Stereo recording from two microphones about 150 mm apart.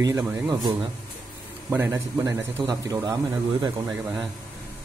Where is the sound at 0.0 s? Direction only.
15° right (ahead or behind).